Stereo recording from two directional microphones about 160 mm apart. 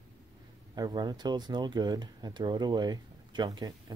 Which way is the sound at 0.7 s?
25° right (ahead or behind).